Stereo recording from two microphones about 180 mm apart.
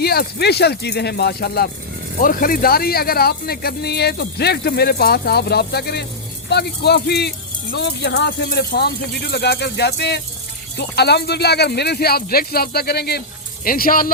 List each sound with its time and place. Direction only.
0.0 s speech: 60° left (ahead or behind)
13.7 s speech: 50° left (ahead or behind)